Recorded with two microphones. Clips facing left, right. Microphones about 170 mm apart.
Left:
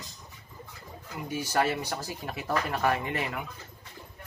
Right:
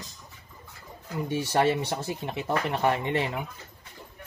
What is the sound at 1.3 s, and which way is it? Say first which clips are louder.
Speech: right 3 dB; 30° right (ahead or behind).